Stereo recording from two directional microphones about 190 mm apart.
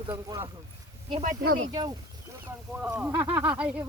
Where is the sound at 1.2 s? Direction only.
45° right (ahead or behind).